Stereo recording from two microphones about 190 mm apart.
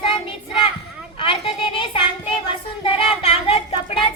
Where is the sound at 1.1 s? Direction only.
25° left (ahead or behind).